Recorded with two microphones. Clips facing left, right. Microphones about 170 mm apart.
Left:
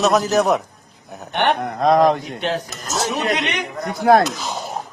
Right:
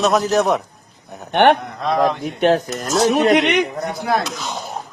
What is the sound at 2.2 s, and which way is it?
Speech, 50° right (ahead or behind).